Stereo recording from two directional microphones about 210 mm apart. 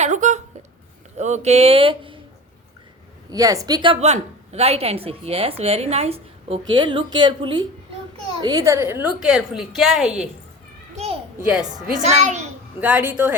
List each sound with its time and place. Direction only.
0.0 s a sound: 35° right (ahead or behind)
1.2 s a woman's voice: 35° right (ahead or behind)
3.2 s a woman's voice: 15° right (ahead or behind)
10.9 s children playing: 30° right (ahead or behind)
12.0 s a child's voice: 35° right (ahead or behind)
12.8 s a woman's voice: 5° right (ahead or behind)